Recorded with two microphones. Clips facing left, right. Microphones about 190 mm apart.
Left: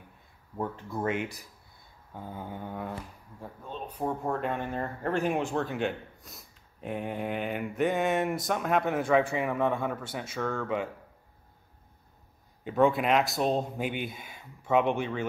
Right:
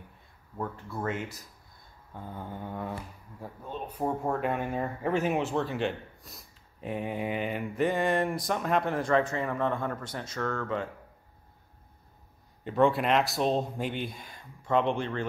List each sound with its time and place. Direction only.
0.6 s speech: 20° left (ahead or behind)
12.6 s speech: centre (ahead or behind)